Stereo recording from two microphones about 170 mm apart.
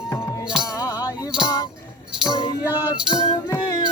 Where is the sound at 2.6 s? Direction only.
10° right (ahead or behind).